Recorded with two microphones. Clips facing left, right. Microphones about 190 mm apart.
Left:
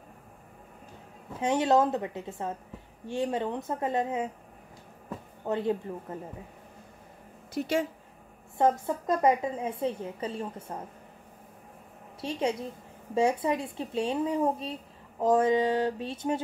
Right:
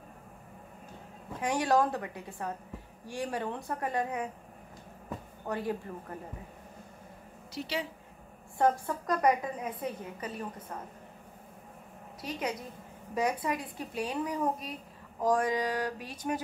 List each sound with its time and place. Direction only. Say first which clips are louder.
1.4 s speech: left 3 dB; 25° left (ahead or behind)
5.5 s speech: left 5 dB; 25° left (ahead or behind)
7.5 s a woman's voice: left 7 dB; 50° left (ahead or behind)
8.5 s speech: left 2 dB; 20° left (ahead or behind)
12.2 s speech: left 6 dB; 30° left (ahead or behind)